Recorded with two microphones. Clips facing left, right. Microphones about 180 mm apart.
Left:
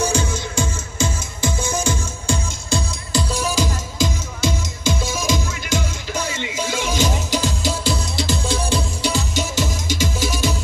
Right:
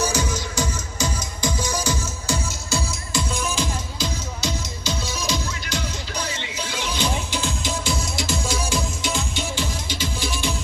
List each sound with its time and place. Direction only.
0.1 s music: 30° left (ahead or behind)
3.3 s music: 45° left (ahead or behind)
7.8 s music: centre (ahead or behind)
8.5 s music: 35° left (ahead or behind)